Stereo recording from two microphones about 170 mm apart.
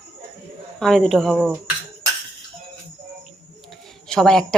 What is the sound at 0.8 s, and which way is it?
Speech, centre (ahead or behind).